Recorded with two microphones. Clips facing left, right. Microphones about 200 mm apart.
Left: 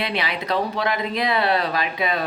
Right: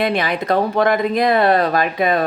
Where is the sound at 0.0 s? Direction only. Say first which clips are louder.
Right 7 dB; 45° right (ahead or behind).